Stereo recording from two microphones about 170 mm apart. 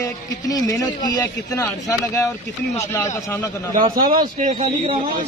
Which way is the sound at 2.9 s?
10° left (ahead or behind).